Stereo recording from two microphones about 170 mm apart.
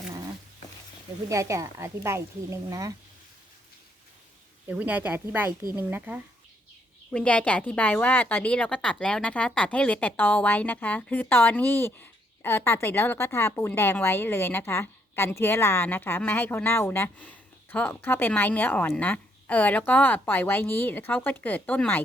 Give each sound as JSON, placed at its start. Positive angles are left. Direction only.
{"t": 1.3, "sound": "a woman's voice", "side_deg": -20}
{"t": 4.7, "sound": "a woman's voice", "side_deg": -10}
{"t": 7.1, "sound": "a woman's voice", "side_deg": 5}